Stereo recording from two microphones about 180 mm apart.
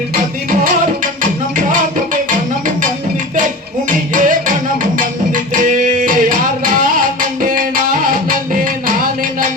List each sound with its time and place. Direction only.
1.2 s music: 45° right (ahead or behind)
4.1 s music: 45° right (ahead or behind)